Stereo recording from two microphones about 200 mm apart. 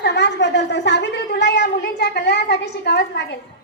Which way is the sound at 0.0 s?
60° left (ahead or behind).